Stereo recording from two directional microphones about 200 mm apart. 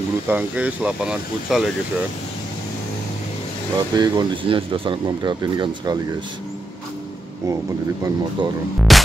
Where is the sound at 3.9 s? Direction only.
20° right (ahead or behind).